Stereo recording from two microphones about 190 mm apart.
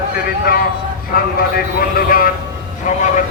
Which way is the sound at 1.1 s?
50° left (ahead or behind).